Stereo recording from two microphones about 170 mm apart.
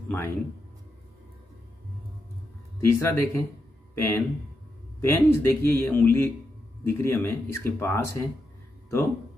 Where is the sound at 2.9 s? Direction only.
15° left (ahead or behind).